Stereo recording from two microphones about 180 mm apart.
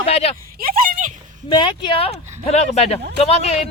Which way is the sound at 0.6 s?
50° right (ahead or behind).